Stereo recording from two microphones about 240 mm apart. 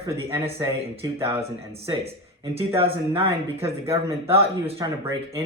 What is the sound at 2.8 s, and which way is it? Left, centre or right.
Speech, right.